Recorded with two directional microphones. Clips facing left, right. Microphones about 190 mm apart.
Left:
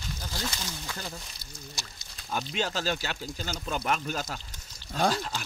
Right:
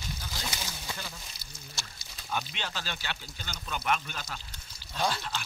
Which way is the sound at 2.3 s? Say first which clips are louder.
Left 5 dB; 40° left (ahead or behind).